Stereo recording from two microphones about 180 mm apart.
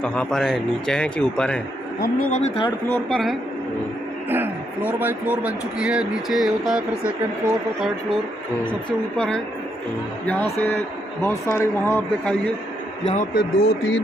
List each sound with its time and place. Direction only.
0.0 s a man's voice: 5° left (ahead or behind)
2.0 s speech: 50° left (ahead or behind)
2.9 s a man's voice: 5° left (ahead or behind)
4.3 s a man's voice: 10° right (ahead or behind)
9.1 s a man's voice: 5° left (ahead or behind)
11.2 s speech: 15° left (ahead or behind)
13.0 s a man's voice: 40° left (ahead or behind)
13.3 s speech: 80° left